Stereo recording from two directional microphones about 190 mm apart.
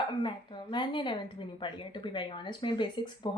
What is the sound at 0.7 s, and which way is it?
Speech, 25° left (ahead or behind).